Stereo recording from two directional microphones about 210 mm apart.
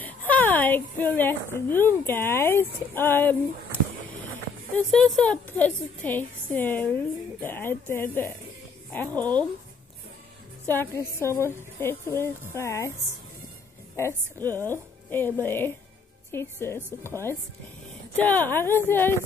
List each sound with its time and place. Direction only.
0.3 s a woman's voice: 10° left (ahead or behind)
4.7 s a woman's voice: 5° left (ahead or behind)
10.7 s a woman's voice: 10° left (ahead or behind)
13.9 s a woman's voice: 10° left (ahead or behind)